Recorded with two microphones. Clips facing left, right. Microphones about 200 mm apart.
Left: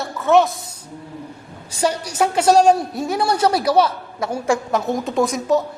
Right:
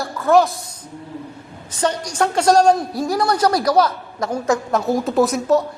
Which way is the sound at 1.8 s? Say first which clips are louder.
Even; 10° left (ahead or behind).